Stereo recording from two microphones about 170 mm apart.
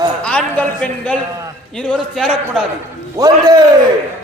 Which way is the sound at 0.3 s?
5° left (ahead or behind).